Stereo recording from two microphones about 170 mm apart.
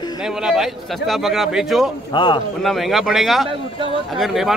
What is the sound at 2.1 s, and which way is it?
Speech, 30° left (ahead or behind).